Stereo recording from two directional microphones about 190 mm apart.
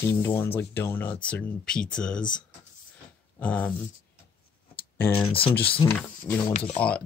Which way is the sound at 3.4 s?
5° left (ahead or behind).